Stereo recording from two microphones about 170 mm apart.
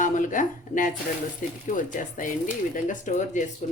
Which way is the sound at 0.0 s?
50° left (ahead or behind).